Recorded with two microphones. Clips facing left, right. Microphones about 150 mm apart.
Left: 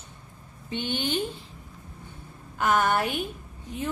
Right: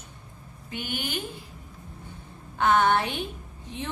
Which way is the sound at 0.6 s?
25° left (ahead or behind).